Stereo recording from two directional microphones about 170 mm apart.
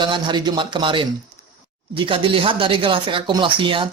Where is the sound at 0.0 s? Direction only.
30° right (ahead or behind).